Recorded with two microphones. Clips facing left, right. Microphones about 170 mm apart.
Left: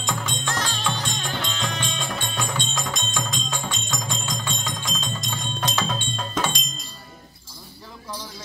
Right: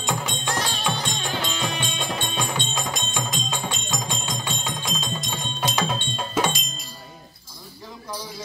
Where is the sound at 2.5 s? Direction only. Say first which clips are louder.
Right 1 dB; 20° right (ahead or behind).